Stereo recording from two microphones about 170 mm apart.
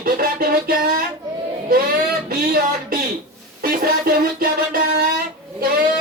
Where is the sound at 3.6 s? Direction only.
60° right (ahead or behind).